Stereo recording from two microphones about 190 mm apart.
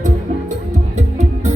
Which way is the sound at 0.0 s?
40° right (ahead or behind).